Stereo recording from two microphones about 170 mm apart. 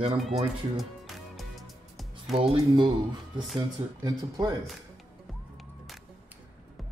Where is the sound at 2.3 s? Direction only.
30° right (ahead or behind).